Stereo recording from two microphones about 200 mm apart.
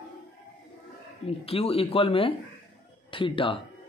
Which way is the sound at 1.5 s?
30° left (ahead or behind).